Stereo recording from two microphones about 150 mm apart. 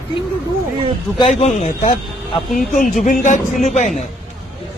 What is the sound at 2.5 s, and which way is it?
A man's voice, 60° left (ahead or behind).